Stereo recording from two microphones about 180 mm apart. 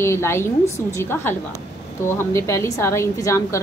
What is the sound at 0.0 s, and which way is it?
A woman's voice, 15° left (ahead or behind).